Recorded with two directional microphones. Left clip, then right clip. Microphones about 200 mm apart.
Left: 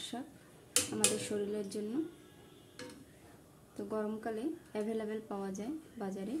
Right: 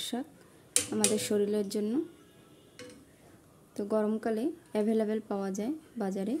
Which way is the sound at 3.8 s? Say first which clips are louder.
Right 8 dB; 50° right (ahead or behind).